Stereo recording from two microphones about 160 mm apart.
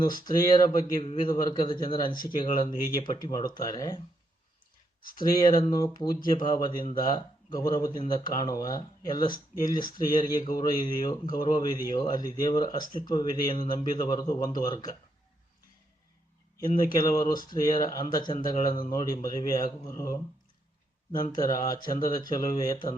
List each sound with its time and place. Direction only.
0.3 s speech: 25° left (ahead or behind)
5.6 s speech: 25° left (ahead or behind)
17.0 s speech: 25° left (ahead or behind)
21.3 s speech: 25° left (ahead or behind)